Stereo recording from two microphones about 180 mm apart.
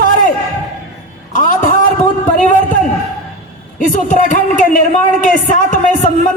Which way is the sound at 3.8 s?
45° left (ahead or behind).